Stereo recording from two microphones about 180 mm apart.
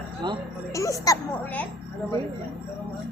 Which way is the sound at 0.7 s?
20° left (ahead or behind).